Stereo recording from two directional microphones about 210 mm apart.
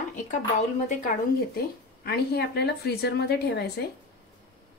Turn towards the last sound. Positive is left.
turn(degrees=50)  # may be behind; listen again after turning